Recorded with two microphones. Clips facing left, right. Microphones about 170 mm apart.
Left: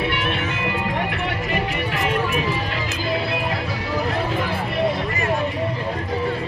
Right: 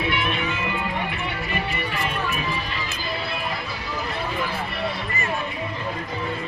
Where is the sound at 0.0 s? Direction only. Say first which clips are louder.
Left 2 dB; 60° left (ahead or behind).